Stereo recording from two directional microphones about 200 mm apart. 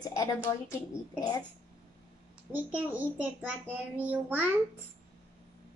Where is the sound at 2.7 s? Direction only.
10° right (ahead or behind).